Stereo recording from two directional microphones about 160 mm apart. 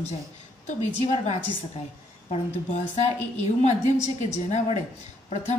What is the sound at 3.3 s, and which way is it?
A woman's voice, 45° left (ahead or behind).